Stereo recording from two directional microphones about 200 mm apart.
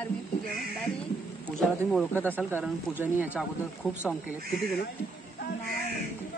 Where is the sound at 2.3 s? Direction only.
10° right (ahead or behind).